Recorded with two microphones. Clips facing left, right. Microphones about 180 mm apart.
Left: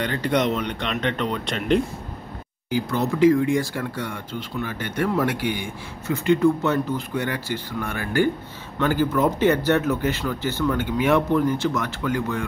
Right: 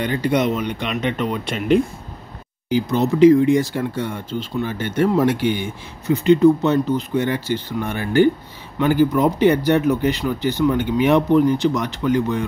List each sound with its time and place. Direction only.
0.0 s speech: 10° right (ahead or behind)
2.7 s speech: 20° right (ahead or behind)